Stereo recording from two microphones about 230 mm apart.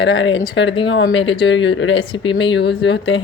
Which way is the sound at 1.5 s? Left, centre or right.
Left.